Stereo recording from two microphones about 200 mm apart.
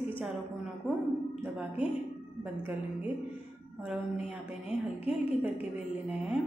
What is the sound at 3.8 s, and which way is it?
A woman's voice, 5° right (ahead or behind).